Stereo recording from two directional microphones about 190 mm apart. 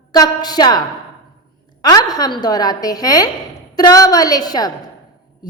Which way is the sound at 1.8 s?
20° left (ahead or behind).